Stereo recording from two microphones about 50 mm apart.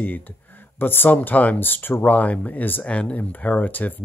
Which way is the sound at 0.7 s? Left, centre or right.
Left.